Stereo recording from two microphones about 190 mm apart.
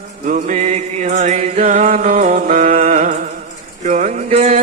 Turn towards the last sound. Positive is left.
turn(degrees=-40)  # may be behind; listen again after turning